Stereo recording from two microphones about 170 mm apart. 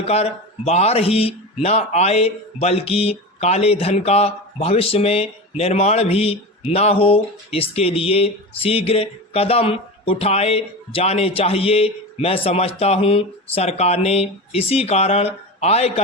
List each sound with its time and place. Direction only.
0.1 s a man's voice: 35° left (ahead or behind)